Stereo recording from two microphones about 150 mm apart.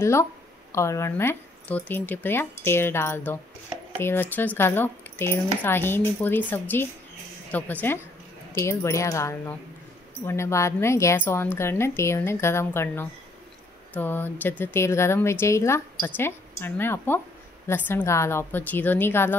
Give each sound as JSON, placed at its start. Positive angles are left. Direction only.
{"t": 0.0, "sound": "speech", "side_deg": 20}